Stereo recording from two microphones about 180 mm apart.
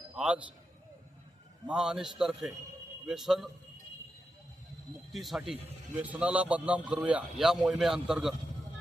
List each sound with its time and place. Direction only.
0.2 s a man's voice: 5° right (ahead or behind)
1.6 s a man's voice: 5° right (ahead or behind)
5.1 s a man's voice: centre (ahead or behind)